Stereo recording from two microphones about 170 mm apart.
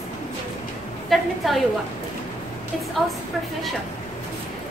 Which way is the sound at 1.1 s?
Centre (ahead or behind).